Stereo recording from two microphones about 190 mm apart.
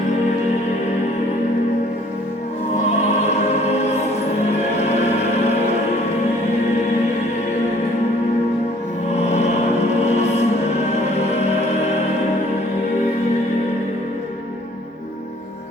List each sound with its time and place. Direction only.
3.2 s music: 35° left (ahead or behind)
9.1 s music: 35° left (ahead or behind)